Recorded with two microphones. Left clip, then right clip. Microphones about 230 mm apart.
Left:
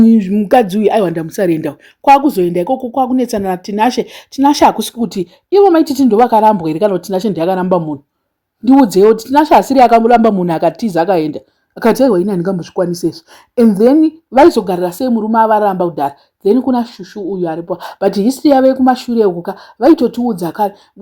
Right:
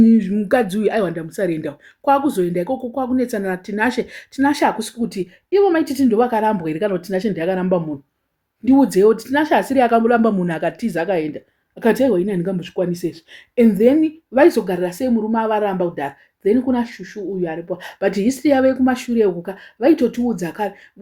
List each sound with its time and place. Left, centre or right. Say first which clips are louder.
0.0 s speech: left 5 dB; left
20.0 s speech: left 4 dB; centre
20.2 s speech: left 7 dB; left